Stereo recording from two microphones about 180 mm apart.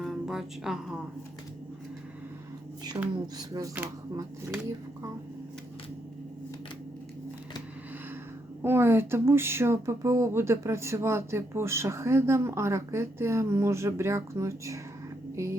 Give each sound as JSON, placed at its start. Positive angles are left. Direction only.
{"t": 0.0, "sound": "music", "side_deg": 0}
{"t": 3.3, "sound": "speech", "side_deg": -20}
{"t": 8.6, "sound": "speech", "side_deg": -15}